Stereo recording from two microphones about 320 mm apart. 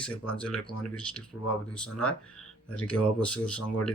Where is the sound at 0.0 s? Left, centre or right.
Centre.